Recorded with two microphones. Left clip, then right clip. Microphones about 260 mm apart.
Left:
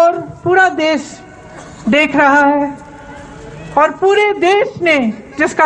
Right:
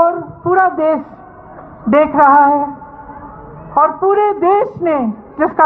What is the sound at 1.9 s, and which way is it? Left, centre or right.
Speech, right.